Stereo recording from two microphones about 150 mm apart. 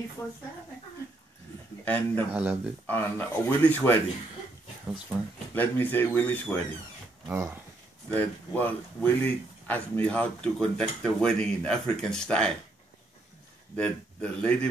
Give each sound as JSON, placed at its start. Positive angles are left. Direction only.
{"t": 1.9, "sound": "speech", "side_deg": 10}
{"t": 2.3, "sound": "speech", "side_deg": -10}
{"t": 2.9, "sound": "speech", "side_deg": 15}
{"t": 5.5, "sound": "speech", "side_deg": 10}
{"t": 7.2, "sound": "speech", "side_deg": -20}
{"t": 8.1, "sound": "speech", "side_deg": 10}
{"t": 13.7, "sound": "speech", "side_deg": 10}